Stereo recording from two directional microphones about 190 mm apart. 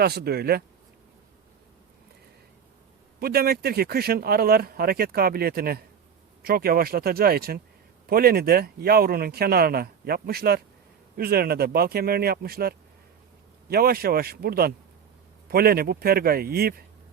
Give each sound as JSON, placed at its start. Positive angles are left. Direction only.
{"t": 0.0, "sound": "speech", "side_deg": -55}
{"t": 3.2, "sound": "speech", "side_deg": -55}